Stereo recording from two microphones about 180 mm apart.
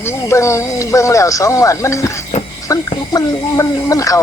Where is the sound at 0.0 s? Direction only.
15° left (ahead or behind).